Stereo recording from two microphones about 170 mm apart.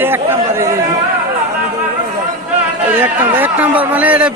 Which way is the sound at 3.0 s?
10° right (ahead or behind).